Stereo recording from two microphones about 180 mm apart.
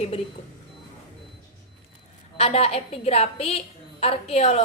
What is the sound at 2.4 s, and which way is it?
A woman's voice, 35° left (ahead or behind).